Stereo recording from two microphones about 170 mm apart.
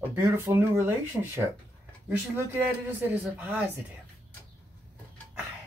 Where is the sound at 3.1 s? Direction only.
10° right (ahead or behind).